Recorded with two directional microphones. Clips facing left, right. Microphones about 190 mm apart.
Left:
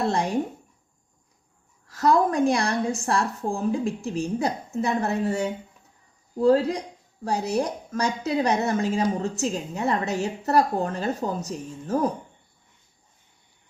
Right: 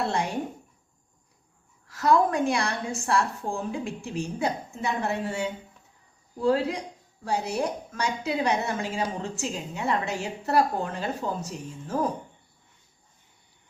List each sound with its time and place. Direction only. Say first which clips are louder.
1.9 s a woman's voice: left 1 dB; 35° left (ahead or behind)